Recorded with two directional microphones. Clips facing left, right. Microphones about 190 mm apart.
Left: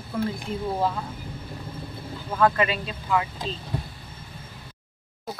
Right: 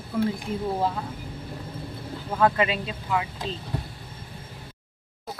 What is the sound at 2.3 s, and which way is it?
Speech, 10° right (ahead or behind).